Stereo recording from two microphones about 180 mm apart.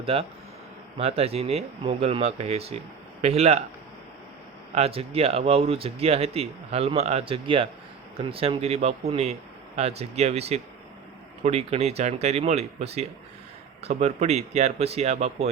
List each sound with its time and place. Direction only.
0.0 s speech: 30° right (ahead or behind)
4.7 s speech: 35° right (ahead or behind)